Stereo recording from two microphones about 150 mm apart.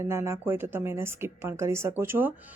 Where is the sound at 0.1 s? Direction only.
20° right (ahead or behind).